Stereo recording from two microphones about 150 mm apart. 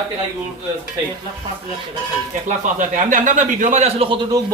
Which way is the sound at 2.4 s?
55° right (ahead or behind).